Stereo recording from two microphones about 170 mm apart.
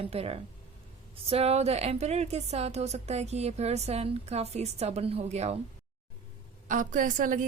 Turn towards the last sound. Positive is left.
turn(degrees=-50)  # may be behind; listen again after turning